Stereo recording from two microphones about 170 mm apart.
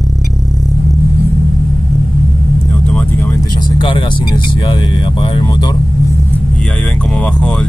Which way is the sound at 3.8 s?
30° left (ahead or behind).